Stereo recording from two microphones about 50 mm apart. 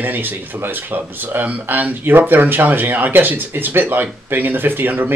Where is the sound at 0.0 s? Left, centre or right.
Right.